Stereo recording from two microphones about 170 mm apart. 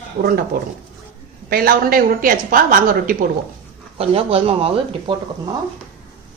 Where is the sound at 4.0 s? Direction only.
35° right (ahead or behind).